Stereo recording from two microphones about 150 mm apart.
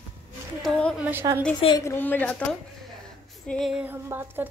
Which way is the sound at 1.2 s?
25° right (ahead or behind).